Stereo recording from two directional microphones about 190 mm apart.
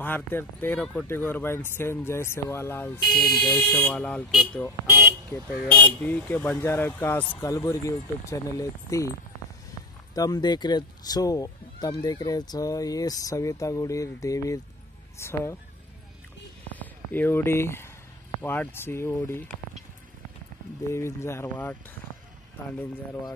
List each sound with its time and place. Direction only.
0.0 s speech: 10° left (ahead or behind)
3.0 s speech: centre (ahead or behind)
6.0 s speech: 5° left (ahead or behind)
10.1 s speech: 20° left (ahead or behind)
16.7 s speech: 10° left (ahead or behind)
20.9 s speech: 15° left (ahead or behind)